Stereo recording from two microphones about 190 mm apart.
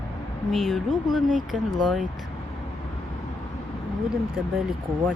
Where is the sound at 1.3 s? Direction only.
40° right (ahead or behind).